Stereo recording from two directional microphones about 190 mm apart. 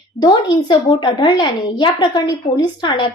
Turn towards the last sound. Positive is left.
turn(degrees=25)  # may be behind; listen again after turning